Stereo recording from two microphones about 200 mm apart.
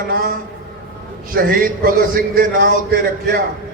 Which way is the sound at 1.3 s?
45° right (ahead or behind).